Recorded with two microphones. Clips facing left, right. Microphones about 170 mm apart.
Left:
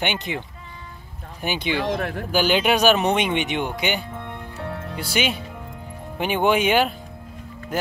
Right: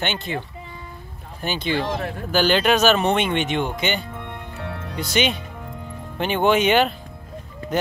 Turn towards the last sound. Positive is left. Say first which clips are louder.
# right 1 dB
turn(degrees=10)  # may be behind; listen again after turning